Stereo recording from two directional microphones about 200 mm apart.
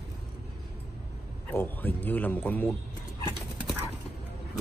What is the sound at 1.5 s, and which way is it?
A man's voice, 10° left (ahead or behind).